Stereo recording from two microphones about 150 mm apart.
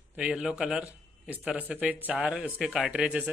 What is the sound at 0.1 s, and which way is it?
A man's voice, 5° right (ahead or behind).